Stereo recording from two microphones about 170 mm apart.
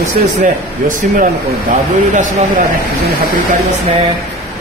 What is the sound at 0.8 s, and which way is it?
Speech, 50° right (ahead or behind).